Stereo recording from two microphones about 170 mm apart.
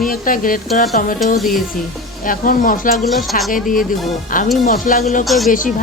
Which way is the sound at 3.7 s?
55° left (ahead or behind).